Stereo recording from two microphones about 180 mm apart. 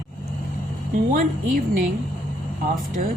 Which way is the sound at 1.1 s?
50° right (ahead or behind).